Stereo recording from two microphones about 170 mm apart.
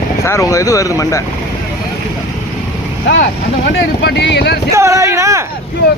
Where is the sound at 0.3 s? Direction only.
20° left (ahead or behind).